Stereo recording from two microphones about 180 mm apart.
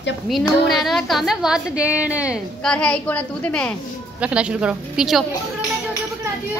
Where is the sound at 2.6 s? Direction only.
5° left (ahead or behind).